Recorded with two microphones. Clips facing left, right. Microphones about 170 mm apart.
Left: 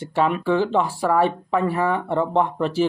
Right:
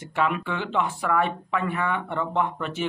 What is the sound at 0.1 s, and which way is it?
Speech, 30° left (ahead or behind).